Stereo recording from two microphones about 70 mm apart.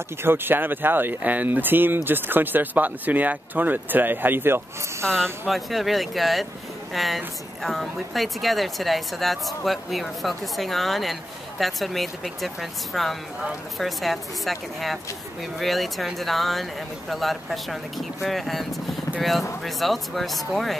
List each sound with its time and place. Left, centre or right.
0.2 s speech: right
5.0 s speech: centre